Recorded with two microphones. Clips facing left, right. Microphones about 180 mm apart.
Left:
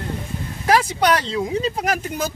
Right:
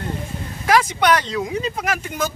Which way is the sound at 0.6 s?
35° left (ahead or behind).